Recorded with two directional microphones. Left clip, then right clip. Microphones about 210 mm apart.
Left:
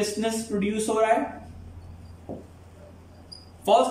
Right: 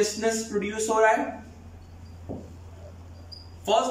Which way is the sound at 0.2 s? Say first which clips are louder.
Right 1 dB; 15° left (ahead or behind).